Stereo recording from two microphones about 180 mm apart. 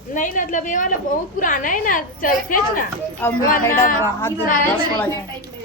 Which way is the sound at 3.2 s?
10° left (ahead or behind).